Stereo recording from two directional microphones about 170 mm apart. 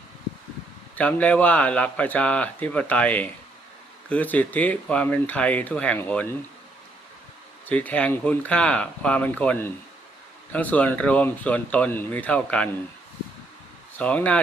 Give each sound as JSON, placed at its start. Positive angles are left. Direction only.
{"t": 0.9, "sound": "speech", "side_deg": 10}
{"t": 7.7, "sound": "speech", "side_deg": 10}
{"t": 14.0, "sound": "speech", "side_deg": 5}